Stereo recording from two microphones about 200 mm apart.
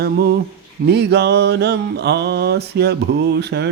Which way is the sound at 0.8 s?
55° right (ahead or behind).